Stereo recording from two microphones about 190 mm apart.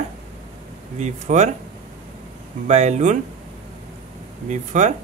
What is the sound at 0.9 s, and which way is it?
Speech, 40° right (ahead or behind).